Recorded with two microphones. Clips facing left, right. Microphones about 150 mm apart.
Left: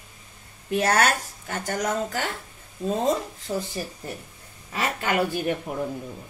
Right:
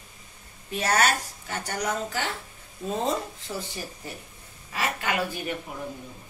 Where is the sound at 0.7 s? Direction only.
50° left (ahead or behind).